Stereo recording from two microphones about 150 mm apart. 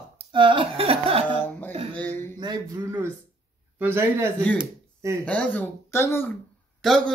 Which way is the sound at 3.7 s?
15° right (ahead or behind).